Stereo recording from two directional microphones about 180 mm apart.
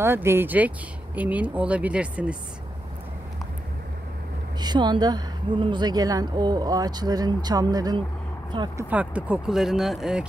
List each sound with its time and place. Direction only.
0.0 s speech: 15° right (ahead or behind)
4.6 s a woman's voice: 25° right (ahead or behind)
8.9 s speech: 5° right (ahead or behind)